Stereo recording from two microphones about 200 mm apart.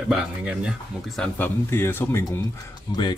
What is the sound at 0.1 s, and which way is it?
Speech, 5° right (ahead or behind).